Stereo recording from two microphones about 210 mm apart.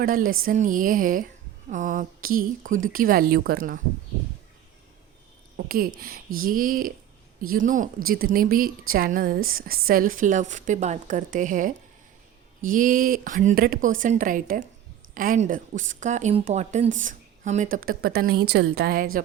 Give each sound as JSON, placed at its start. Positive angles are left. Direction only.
{"t": 0.0, "sound": "a woman's voice", "side_deg": -40}
{"t": 5.5, "sound": "a woman's voice", "side_deg": -45}
{"t": 17.8, "sound": "a woman's voice", "side_deg": -45}